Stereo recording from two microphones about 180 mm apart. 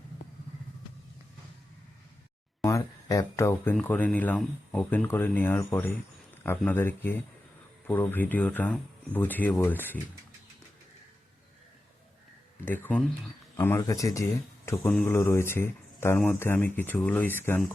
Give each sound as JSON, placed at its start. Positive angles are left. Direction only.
{"t": 2.6, "sound": "a sound", "side_deg": 20}
{"t": 3.8, "sound": "speech", "side_deg": 10}
{"t": 12.6, "sound": "speech", "side_deg": 10}
{"t": 16.1, "sound": "speech", "side_deg": 5}